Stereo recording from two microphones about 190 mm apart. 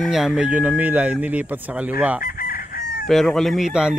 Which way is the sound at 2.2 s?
50° left (ahead or behind).